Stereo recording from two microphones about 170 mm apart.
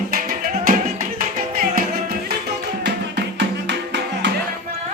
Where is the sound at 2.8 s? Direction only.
80° right.